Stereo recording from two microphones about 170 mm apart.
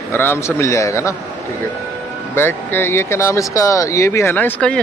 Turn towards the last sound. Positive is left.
turn(degrees=10)  # may be behind; listen again after turning